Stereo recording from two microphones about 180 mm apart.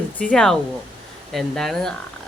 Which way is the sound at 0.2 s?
5° left (ahead or behind).